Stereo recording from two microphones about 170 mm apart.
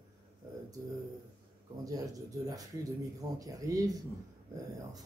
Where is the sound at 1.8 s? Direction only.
20° right (ahead or behind).